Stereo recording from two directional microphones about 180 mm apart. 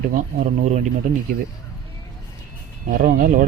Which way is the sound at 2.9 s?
45° right (ahead or behind).